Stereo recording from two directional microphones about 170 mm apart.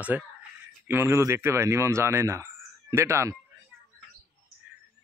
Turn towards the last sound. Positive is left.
turn(degrees=-15)  # may be behind; listen again after turning